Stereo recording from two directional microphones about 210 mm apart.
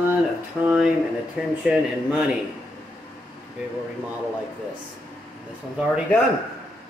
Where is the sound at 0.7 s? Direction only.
5° right (ahead or behind).